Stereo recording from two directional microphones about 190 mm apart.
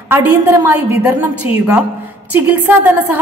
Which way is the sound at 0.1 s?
10° right (ahead or behind).